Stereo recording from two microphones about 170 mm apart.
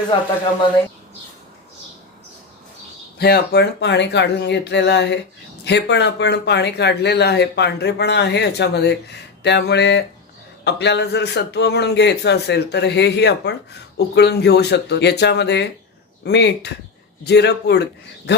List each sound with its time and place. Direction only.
3.2 s a man's voice: 65° left (ahead or behind); by 18.4 s 85° left